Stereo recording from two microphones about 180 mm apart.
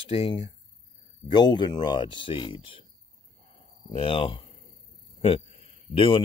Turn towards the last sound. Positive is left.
turn(degrees=30)  # may be behind; listen again after turning